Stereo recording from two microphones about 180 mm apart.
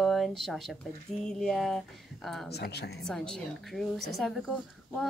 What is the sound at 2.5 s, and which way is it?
Speech, 65° left (ahead or behind).